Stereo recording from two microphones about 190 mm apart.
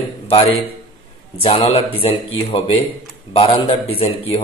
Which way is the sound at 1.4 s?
30° left (ahead or behind).